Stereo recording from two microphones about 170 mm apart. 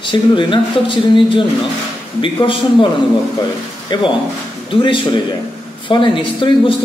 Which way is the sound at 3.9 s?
25° left (ahead or behind).